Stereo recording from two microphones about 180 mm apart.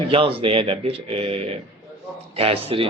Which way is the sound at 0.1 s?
30° right (ahead or behind).